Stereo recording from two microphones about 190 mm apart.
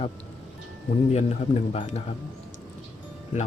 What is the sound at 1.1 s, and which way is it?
Speech, 35° left (ahead or behind).